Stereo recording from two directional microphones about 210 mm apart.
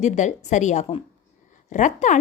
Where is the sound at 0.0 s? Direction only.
35° left (ahead or behind).